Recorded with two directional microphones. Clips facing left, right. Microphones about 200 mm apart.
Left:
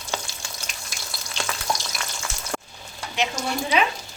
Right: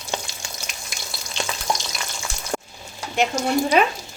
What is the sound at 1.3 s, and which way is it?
Frying, 20° right (ahead or behind).